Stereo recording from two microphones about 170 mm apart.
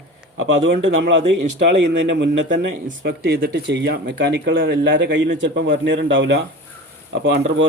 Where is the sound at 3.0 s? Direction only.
65° right (ahead or behind).